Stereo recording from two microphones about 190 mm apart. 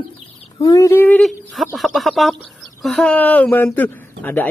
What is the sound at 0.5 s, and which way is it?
Speech, 20° left (ahead or behind).